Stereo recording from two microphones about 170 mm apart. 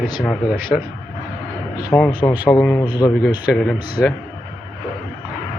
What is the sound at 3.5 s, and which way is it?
Speech, 5° left (ahead or behind).